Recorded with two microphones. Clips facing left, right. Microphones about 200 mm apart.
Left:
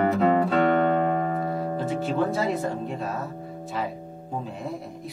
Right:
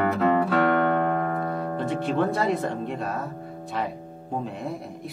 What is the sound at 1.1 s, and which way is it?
Music, 25° left (ahead or behind).